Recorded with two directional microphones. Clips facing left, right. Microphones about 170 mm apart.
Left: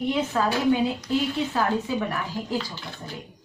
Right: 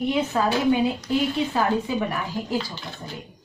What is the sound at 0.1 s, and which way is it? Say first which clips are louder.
A woman's voice: right 1 dB; 15° right (ahead or behind).